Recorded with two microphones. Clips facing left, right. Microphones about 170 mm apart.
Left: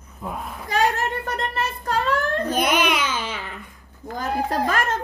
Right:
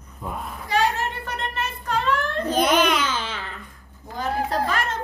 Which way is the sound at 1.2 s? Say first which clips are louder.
Left 3 dB; 40° left (ahead or behind).